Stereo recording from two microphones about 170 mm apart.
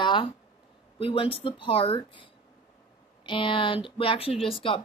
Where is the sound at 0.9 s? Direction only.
35° left (ahead or behind).